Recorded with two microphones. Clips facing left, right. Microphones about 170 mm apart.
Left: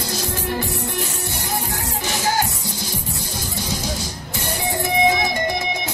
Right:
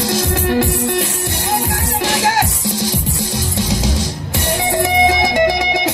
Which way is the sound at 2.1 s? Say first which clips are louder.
Right 4 dB; 90° right.